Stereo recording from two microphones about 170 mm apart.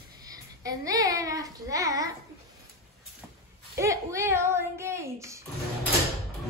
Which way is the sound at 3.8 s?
15° right (ahead or behind).